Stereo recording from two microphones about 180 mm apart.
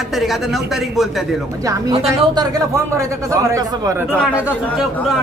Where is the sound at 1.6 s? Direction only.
20° right (ahead or behind).